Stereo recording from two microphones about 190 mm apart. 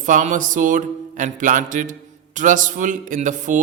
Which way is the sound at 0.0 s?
40° right (ahead or behind).